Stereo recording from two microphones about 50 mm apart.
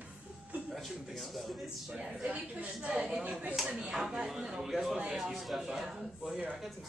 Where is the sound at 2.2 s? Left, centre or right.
Right.